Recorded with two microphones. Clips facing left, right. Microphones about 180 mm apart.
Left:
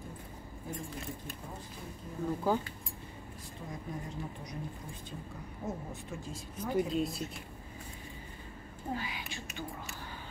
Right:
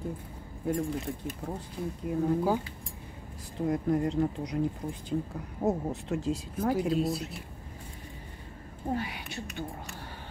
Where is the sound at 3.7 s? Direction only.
70° right (ahead or behind).